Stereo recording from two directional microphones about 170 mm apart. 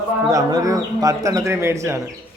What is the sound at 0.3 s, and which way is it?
Speech, 20° right (ahead or behind).